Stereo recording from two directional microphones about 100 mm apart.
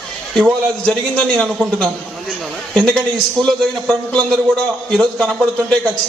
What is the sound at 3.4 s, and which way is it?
Speech, 50° right (ahead or behind).